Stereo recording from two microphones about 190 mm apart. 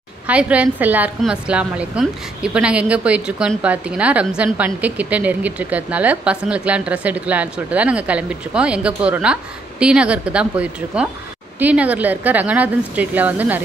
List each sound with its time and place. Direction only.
0.3 s a woman's voice: 5° right (ahead or behind)